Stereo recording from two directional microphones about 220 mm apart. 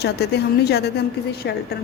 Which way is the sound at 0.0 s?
45° left (ahead or behind).